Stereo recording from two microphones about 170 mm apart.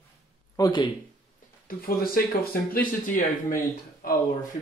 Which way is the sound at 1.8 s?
60° left (ahead or behind).